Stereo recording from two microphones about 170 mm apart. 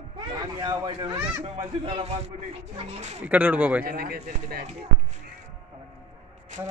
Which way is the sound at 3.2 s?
10° right (ahead or behind).